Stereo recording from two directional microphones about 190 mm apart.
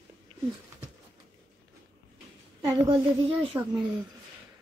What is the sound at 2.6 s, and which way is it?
Speech, 20° right (ahead or behind).